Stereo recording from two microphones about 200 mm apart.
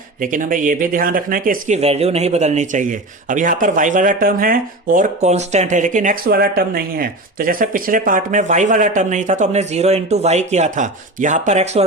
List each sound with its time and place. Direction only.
0.2 s speech: 40° right (ahead or behind)